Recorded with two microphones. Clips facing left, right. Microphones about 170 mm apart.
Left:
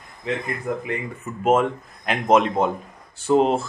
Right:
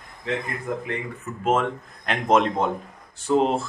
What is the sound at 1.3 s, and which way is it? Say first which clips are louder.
Speech: left 4 dB; 15° left (ahead or behind).